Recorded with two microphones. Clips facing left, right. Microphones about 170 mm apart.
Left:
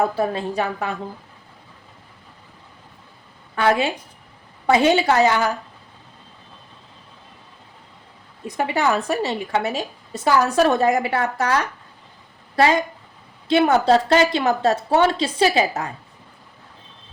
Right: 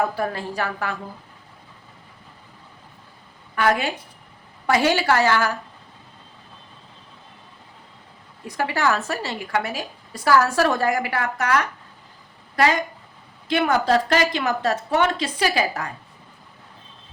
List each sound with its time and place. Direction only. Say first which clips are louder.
0.0 s a woman's voice: left 3 dB; 25° left (ahead or behind)
3.5 s a woman's voice: left 2 dB; 25° left (ahead or behind)
8.4 s a woman's voice: left 2 dB; 20° left (ahead or behind)